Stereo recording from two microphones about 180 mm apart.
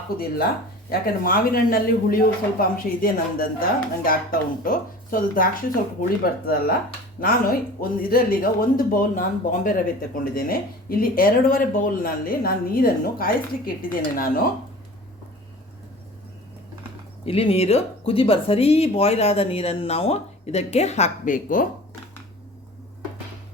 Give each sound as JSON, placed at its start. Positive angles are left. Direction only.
{"t": 0.9, "sound": "speech", "side_deg": 55}
{"t": 17.2, "sound": "speech", "side_deg": 35}